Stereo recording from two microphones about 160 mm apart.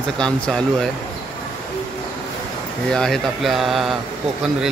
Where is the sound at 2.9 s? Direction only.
Centre (ahead or behind).